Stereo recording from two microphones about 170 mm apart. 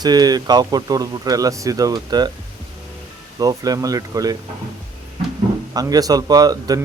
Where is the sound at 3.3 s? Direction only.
20° right (ahead or behind).